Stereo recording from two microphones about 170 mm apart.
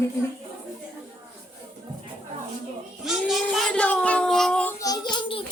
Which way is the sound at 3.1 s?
Centre (ahead or behind).